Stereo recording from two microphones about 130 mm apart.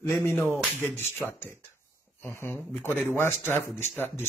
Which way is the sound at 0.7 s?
15° left (ahead or behind).